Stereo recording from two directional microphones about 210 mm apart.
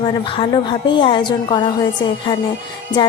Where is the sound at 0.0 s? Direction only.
25° left (ahead or behind).